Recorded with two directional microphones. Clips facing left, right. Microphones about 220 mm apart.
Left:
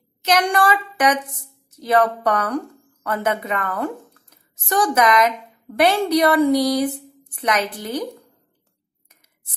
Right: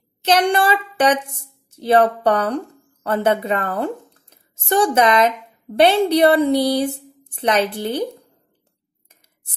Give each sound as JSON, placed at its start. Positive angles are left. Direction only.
{"t": 0.2, "sound": "a woman's voice", "side_deg": -30}